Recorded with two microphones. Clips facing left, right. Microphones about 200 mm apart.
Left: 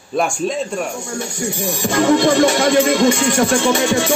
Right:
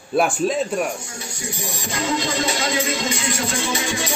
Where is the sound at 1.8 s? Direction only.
55° left (ahead or behind).